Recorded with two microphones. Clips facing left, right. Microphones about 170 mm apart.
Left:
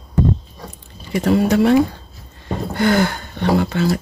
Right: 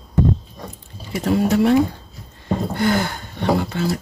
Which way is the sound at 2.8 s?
80° left.